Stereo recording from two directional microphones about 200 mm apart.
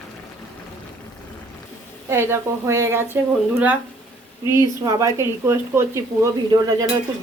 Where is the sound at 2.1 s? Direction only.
10° right (ahead or behind).